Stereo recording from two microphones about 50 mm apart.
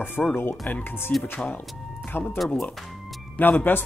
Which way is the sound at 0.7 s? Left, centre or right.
Left.